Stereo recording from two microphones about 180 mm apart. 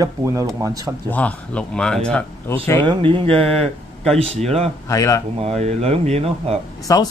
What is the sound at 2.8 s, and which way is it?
Speech, 25° right (ahead or behind).